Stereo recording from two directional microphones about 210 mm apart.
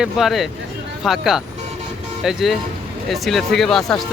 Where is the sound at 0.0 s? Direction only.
Centre (ahead or behind).